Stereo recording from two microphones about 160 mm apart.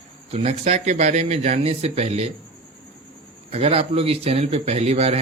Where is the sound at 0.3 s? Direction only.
40° right (ahead or behind).